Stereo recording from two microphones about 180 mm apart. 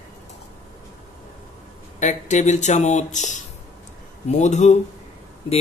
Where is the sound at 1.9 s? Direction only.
40° left (ahead or behind).